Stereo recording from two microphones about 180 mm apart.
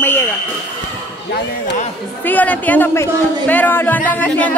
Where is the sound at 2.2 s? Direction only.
10° left (ahead or behind).